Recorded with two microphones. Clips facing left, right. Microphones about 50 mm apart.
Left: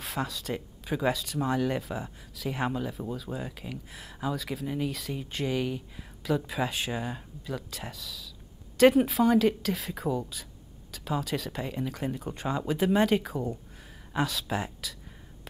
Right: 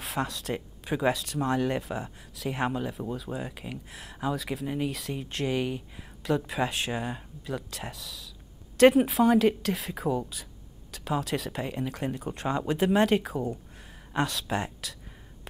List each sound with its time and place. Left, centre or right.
0.0 s speech: centre